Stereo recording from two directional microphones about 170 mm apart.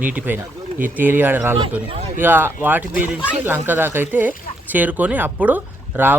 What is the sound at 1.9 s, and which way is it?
Speech, 35° right (ahead or behind).